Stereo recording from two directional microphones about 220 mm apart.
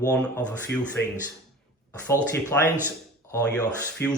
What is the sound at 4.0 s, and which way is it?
Speech, 50° left (ahead or behind).